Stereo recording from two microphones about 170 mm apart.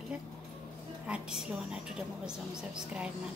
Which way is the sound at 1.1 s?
5° right (ahead or behind).